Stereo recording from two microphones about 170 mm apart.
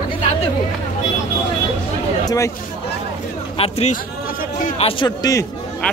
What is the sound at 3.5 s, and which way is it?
Speech, 35° left (ahead or behind).